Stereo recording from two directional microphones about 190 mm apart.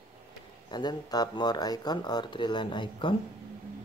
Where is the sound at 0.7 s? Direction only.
20° left (ahead or behind).